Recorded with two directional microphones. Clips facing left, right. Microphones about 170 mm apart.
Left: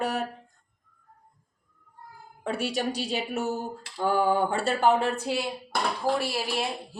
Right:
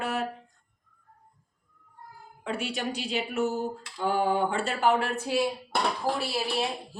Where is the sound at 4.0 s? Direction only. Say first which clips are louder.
Left 2 dB; 45° left (ahead or behind).